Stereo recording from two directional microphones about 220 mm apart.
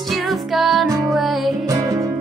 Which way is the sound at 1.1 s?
Centre (ahead or behind).